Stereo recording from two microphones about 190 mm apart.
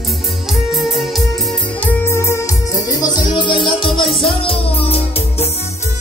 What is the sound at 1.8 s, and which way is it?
Music, 15° left (ahead or behind).